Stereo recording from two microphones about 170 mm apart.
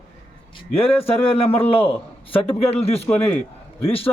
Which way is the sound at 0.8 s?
35° left (ahead or behind).